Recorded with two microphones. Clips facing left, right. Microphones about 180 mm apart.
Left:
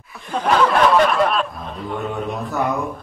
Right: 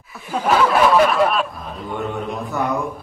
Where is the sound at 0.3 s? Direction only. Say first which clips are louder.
Even; 5° right (ahead or behind).